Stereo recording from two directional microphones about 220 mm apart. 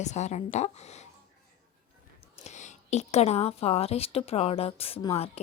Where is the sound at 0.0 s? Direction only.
30° left (ahead or behind).